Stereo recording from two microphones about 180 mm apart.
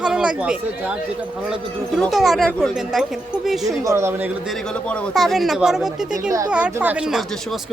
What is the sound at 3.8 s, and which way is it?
Speech, 15° right (ahead or behind).